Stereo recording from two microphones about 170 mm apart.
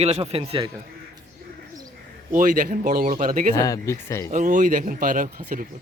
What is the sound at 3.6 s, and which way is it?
Speech, 20° left (ahead or behind).